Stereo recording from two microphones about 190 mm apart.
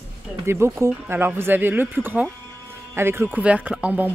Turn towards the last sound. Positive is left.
turn(degrees=-10)  # may be behind; listen again after turning